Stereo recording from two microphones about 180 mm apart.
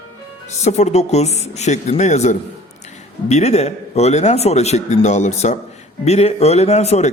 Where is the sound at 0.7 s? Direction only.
40° left (ahead or behind).